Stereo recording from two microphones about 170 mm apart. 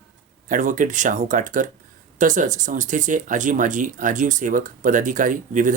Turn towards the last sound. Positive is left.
turn(degrees=-50)  # may be behind; listen again after turning